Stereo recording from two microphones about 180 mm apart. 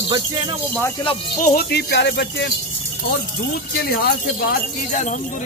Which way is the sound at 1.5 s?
60° left (ahead or behind).